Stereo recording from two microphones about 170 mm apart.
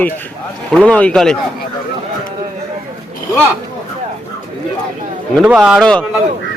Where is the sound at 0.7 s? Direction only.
5° left (ahead or behind).